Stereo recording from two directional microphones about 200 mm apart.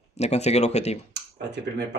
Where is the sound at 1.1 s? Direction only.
60° right (ahead or behind).